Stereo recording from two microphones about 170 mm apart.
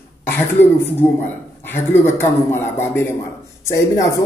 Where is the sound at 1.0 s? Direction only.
15° left (ahead or behind).